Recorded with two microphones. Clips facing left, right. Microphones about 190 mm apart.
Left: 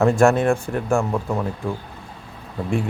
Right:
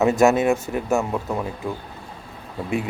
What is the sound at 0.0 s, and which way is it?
Speech, 5° right (ahead or behind).